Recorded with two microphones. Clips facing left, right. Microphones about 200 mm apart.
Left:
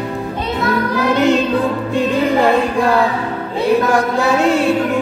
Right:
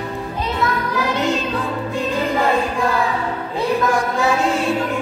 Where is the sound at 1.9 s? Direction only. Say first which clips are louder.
Left 6 dB; 70° left (ahead or behind).